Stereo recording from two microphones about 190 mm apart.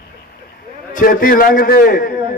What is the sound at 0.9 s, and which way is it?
A man's voice, 45° left (ahead or behind).